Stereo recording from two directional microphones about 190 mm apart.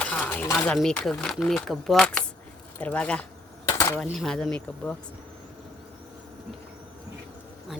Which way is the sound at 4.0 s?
Centre (ahead or behind).